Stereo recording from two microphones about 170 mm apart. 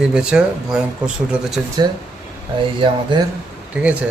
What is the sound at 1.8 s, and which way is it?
Speech, 25° right (ahead or behind).